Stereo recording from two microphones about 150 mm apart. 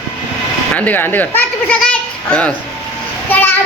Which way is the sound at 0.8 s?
10° left (ahead or behind).